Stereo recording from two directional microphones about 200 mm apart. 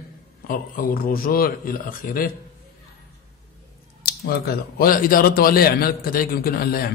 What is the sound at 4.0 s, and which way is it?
Speech, 50° left (ahead or behind).